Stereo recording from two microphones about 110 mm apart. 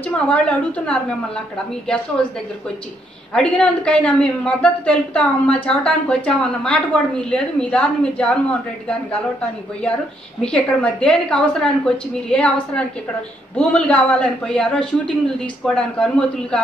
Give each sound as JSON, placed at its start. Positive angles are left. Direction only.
{"t": 0.1, "sound": "a man's voice", "side_deg": 10}
{"t": 2.2, "sound": "speech", "side_deg": 5}
{"t": 3.3, "sound": "a man's voice", "side_deg": 10}
{"t": 10.4, "sound": "a man's voice", "side_deg": 10}